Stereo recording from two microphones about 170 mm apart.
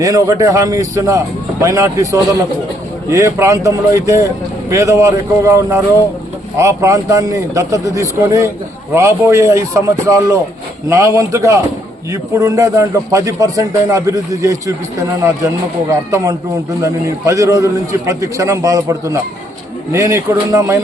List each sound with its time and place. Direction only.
0.0 s a man's voice: 20° right (ahead or behind)
15.9 s a man's voice: 20° right (ahead or behind)